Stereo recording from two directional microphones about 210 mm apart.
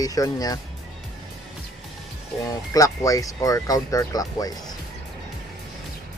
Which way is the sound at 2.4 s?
15° left (ahead or behind).